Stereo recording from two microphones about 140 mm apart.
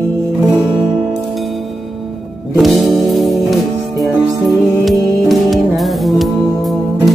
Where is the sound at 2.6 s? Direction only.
Centre (ahead or behind).